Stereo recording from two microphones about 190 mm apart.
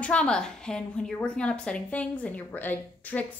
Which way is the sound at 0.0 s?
5° left (ahead or behind).